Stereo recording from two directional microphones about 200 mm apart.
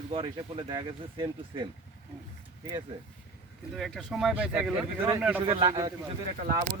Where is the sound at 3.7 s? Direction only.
Centre (ahead or behind).